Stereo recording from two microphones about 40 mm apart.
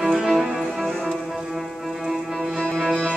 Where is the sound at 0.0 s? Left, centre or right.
Centre.